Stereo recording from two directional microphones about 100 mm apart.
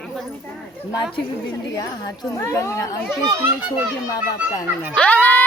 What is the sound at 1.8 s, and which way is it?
Speech, 35° left (ahead or behind).